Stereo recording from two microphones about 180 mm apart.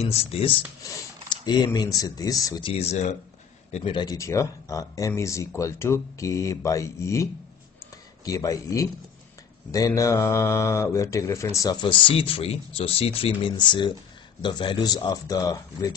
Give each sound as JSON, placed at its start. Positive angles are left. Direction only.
{"t": 0.0, "sound": "speech", "side_deg": 35}
{"t": 8.3, "sound": "speech", "side_deg": 20}